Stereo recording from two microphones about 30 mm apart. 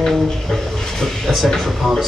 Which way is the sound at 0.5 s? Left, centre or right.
Centre.